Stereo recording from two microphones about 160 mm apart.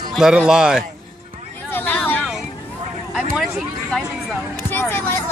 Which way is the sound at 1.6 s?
10° left (ahead or behind).